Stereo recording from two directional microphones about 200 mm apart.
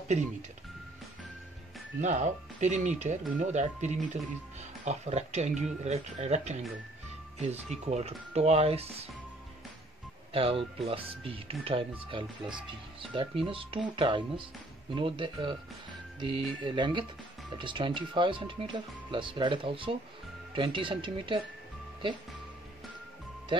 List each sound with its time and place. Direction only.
2.0 s speech: 35° right (ahead or behind)
10.3 s speech: 30° right (ahead or behind)